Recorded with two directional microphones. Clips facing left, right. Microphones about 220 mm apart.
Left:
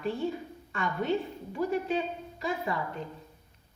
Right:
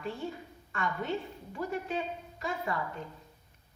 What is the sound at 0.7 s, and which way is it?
A woman's voice, 20° left (ahead or behind).